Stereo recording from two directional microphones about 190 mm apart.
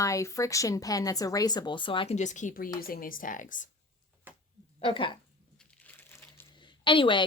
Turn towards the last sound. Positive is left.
turn(degrees=25)  # may be behind; listen again after turning